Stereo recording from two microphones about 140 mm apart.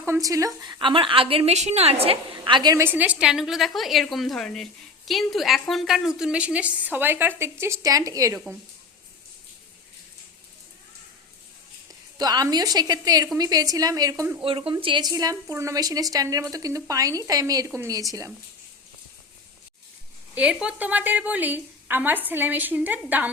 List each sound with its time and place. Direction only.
0.0 s a woman's voice: 20° right (ahead or behind); by 2.1 s 45° right (ahead or behind)
2.4 s a woman's voice: 30° right (ahead or behind)
2.7 s a woman's voice: 15° right (ahead or behind)
12.1 s a woman's voice: 30° right (ahead or behind)
14.4 s a woman's voice: 40° right (ahead or behind)
15.1 s a woman's voice: 25° right (ahead or behind)
20.3 s a woman's voice: 10° right (ahead or behind)